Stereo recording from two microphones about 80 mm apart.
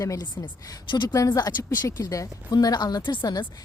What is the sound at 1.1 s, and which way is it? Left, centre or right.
A woman's voice, left.